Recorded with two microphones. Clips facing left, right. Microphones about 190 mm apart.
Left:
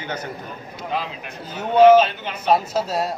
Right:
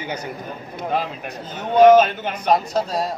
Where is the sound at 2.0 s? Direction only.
50° right (ahead or behind).